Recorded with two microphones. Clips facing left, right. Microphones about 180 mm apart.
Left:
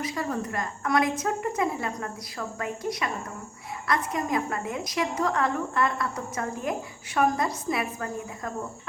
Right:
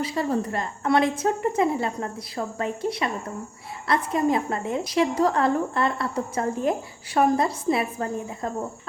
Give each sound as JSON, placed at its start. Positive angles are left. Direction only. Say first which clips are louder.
{"t": 0.0, "sound": "a woman's voice", "louder": "right 5 dB", "side_deg": -30}